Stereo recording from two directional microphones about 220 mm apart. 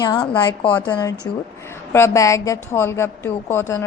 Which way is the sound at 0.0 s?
20° left (ahead or behind).